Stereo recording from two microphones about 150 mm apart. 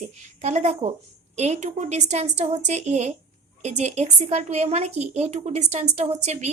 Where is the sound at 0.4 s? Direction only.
50° right (ahead or behind).